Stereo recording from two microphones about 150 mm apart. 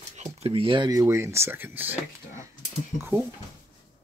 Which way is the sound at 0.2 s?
40° right (ahead or behind).